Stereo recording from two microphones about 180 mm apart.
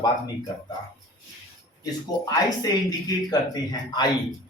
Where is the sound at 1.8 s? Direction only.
20° left (ahead or behind).